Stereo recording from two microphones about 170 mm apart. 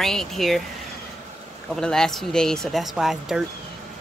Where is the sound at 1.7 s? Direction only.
5° left (ahead or behind).